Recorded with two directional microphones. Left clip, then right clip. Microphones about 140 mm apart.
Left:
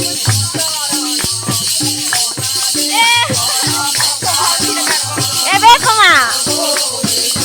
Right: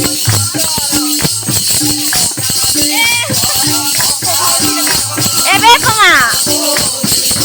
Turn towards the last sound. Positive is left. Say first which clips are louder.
# right 1 dB
turn(degrees=-15)  # may be behind; listen again after turning